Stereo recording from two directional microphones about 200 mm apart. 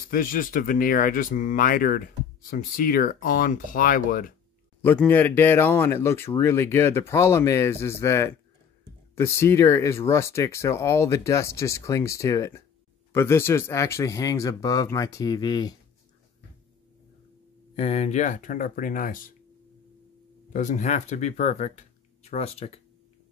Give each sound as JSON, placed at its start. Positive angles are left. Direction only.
{"t": 0.1, "sound": "speech", "side_deg": 45}
{"t": 4.8, "sound": "speech", "side_deg": 10}
{"t": 17.7, "sound": "speech", "side_deg": 30}
{"t": 20.5, "sound": "speech", "side_deg": 40}